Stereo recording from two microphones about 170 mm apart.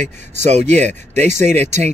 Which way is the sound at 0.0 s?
40° right (ahead or behind).